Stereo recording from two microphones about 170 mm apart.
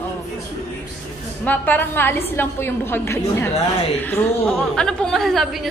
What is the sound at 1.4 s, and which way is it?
A woman's voice, 10° left (ahead or behind).